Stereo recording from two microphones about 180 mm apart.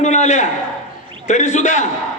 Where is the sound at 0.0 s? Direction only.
40° left (ahead or behind).